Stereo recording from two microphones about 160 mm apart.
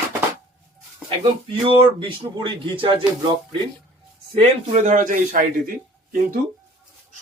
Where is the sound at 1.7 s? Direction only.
30° right (ahead or behind).